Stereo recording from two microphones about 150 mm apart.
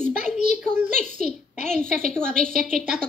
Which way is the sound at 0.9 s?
50° left (ahead or behind).